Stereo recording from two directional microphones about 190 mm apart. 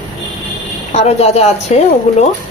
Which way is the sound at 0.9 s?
35° left (ahead or behind).